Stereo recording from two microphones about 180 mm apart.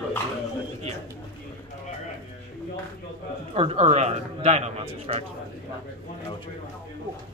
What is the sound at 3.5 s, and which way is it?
A man's voice, 35° right (ahead or behind).